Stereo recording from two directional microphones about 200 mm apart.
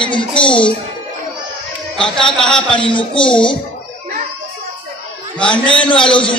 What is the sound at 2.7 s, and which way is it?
Speech, 25° left (ahead or behind).